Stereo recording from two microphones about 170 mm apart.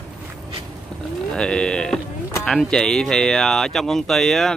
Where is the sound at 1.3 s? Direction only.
5° left (ahead or behind).